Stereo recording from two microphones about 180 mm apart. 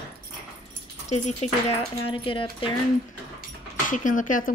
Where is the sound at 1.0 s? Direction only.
40° left (ahead or behind).